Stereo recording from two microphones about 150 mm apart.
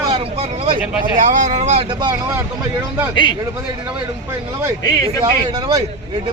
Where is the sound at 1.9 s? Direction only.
30° right (ahead or behind).